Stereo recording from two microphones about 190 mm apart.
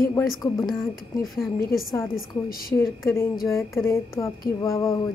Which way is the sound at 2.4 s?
50° left (ahead or behind).